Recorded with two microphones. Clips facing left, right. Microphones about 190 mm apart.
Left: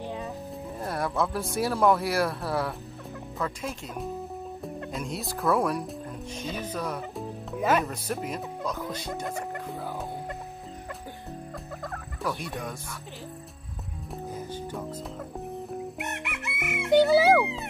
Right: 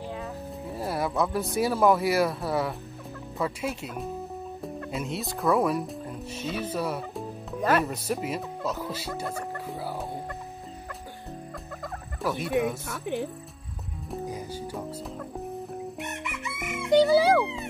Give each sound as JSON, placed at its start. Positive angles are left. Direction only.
{"t": 0.7, "sound": "speech", "side_deg": -5}
{"t": 11.8, "sound": "fowl", "side_deg": 0}
{"t": 12.8, "sound": "speech", "side_deg": -60}
{"t": 14.2, "sound": "music", "side_deg": -10}
{"t": 16.1, "sound": "chicken", "side_deg": 70}
{"t": 16.8, "sound": "music", "side_deg": 0}